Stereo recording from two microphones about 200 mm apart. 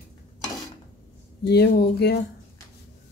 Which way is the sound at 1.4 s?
55° left (ahead or behind).